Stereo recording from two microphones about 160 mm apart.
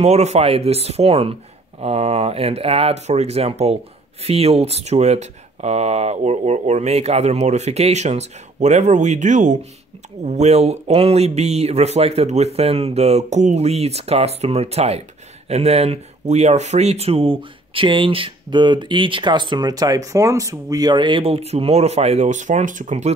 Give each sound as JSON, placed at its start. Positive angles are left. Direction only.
{"t": 0.0, "sound": "speech", "side_deg": -45}